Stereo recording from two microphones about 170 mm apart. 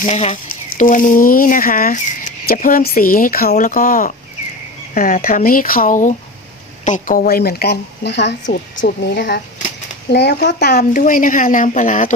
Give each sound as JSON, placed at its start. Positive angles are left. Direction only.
{"t": 0.0, "sound": "speech", "side_deg": 40}